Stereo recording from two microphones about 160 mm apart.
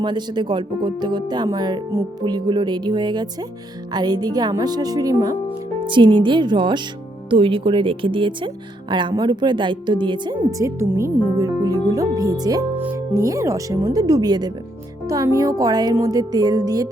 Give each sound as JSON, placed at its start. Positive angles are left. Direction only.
{"t": 0.0, "sound": "speech", "side_deg": -25}
{"t": 12.7, "sound": "speech", "side_deg": -15}